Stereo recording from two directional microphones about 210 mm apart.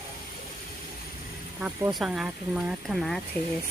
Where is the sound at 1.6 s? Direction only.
5° right (ahead or behind).